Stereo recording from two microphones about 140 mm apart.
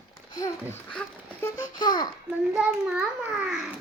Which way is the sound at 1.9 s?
30° left (ahead or behind).